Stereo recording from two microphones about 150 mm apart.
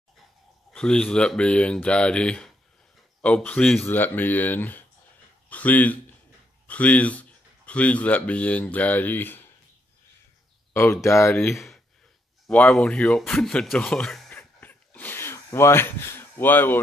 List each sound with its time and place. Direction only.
0.7 s speech: 5° left (ahead or behind)
10.7 s speech: 15° left (ahead or behind)
11.5 s speech: centre (ahead or behind)
14.6 s a sound: 10° left (ahead or behind)